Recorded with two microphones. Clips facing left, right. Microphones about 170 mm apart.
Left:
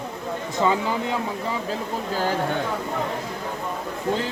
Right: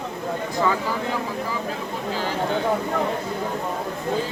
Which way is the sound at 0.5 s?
20° left (ahead or behind).